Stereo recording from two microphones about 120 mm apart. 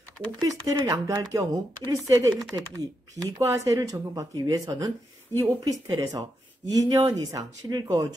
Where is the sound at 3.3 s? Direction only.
25° right (ahead or behind).